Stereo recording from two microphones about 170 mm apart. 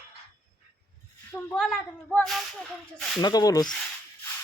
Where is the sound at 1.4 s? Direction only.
5° left (ahead or behind).